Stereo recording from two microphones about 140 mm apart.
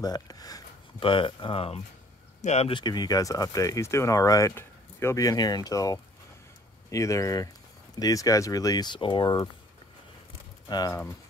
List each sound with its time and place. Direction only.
0.0 s speech: 30° left (ahead or behind)
0.9 s speech: 40° left (ahead or behind)
2.7 s speech: 30° left (ahead or behind)
10.7 s speech: 30° left (ahead or behind)